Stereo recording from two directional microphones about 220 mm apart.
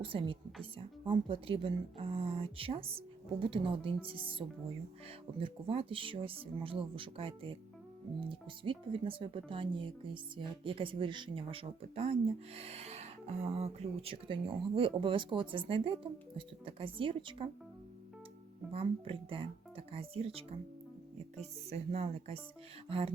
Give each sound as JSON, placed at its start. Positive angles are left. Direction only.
{"t": 0.0, "sound": "speech", "side_deg": -25}
{"t": 18.7, "sound": "speech", "side_deg": -25}
{"t": 21.7, "sound": "speech", "side_deg": -25}